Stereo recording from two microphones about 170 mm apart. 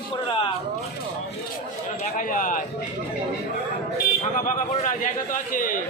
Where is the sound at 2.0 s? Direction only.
50° left (ahead or behind).